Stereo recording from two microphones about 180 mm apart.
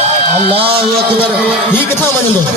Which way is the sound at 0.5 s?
30° right (ahead or behind).